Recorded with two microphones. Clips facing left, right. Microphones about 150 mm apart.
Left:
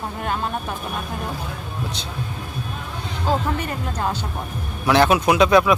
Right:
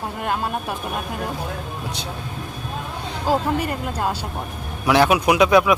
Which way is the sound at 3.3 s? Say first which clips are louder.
Right 2 dB; 10° right (ahead or behind).